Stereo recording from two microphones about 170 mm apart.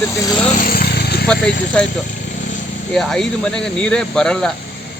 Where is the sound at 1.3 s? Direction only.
5° left (ahead or behind).